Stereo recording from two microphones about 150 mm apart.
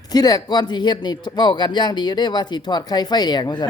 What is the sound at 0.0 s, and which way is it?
Speech, 25° left (ahead or behind).